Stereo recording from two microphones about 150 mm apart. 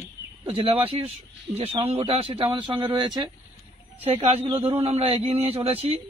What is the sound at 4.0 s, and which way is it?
Speech, 40° right (ahead or behind).